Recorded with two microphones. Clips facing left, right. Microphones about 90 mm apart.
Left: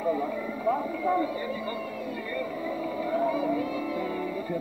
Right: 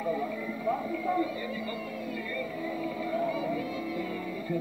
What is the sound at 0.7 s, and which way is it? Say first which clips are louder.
Speech: left 4 dB; 40° left (ahead or behind).